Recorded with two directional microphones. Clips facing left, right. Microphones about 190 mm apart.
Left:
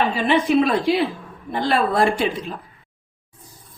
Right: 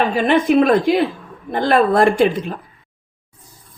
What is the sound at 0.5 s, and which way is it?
A woman's voice, 55° right (ahead or behind).